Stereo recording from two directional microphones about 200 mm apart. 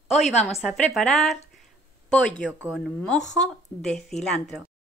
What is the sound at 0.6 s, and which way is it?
A woman's voice, centre (ahead or behind).